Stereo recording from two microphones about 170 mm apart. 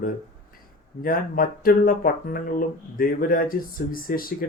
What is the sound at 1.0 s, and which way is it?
Speech, 55° left (ahead or behind).